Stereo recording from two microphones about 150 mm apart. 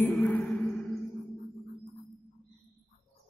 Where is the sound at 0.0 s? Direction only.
10° left (ahead or behind).